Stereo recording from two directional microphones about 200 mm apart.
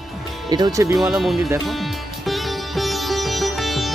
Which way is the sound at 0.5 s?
20° right (ahead or behind).